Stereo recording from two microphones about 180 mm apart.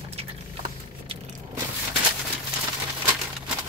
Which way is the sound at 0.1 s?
35° right (ahead or behind).